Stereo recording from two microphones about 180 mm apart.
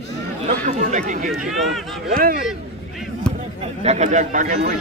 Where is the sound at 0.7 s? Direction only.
40° right (ahead or behind).